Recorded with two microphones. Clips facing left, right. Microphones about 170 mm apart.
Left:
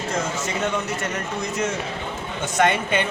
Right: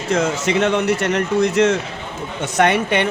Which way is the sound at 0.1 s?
80° right.